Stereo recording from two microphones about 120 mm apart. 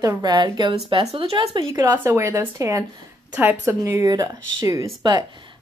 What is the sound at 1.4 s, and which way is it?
Speech, 35° right (ahead or behind).